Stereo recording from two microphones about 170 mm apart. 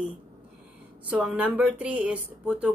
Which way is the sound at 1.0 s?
10° right (ahead or behind).